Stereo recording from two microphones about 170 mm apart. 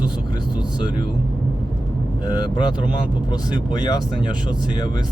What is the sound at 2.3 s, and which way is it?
Speech, 25° left (ahead or behind).